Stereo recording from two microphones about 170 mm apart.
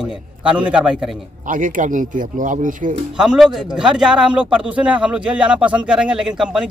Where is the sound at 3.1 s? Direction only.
5° right (ahead or behind).